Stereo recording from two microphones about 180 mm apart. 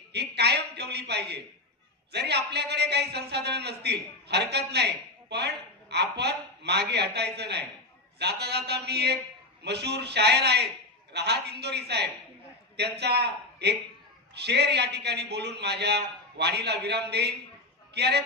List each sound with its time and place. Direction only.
0.1 s a man's voice: 65° right (ahead or behind)